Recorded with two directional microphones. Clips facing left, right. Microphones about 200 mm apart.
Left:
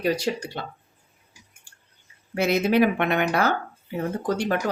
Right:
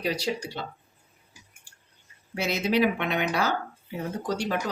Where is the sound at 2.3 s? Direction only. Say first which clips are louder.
Left 5 dB; 55° left (ahead or behind).